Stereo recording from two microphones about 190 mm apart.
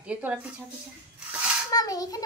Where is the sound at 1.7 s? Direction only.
20° left (ahead or behind).